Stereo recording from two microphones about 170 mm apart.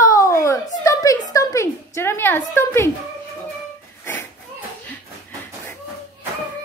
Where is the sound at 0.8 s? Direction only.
20° left (ahead or behind).